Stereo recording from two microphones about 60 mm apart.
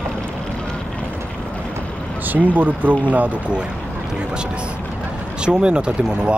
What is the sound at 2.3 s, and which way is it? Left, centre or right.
Speech, right.